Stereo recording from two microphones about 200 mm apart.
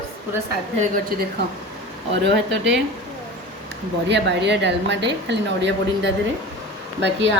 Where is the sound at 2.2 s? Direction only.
60° right (ahead or behind).